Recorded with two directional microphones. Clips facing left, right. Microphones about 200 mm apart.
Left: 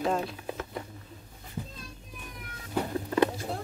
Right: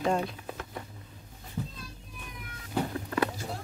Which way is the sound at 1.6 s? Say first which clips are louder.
Right 2 dB; 15° left (ahead or behind).